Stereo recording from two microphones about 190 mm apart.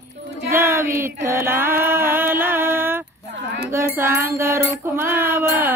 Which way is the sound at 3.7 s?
10° right (ahead or behind).